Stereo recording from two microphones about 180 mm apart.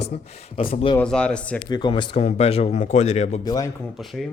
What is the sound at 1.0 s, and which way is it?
Speech, 5° left (ahead or behind).